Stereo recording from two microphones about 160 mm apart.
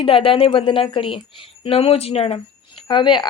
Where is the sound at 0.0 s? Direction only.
35° left (ahead or behind).